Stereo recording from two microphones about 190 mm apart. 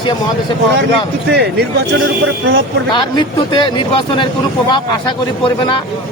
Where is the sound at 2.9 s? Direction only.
25° left (ahead or behind).